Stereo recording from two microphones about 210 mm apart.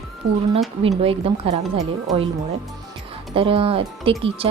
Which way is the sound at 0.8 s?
25° right (ahead or behind).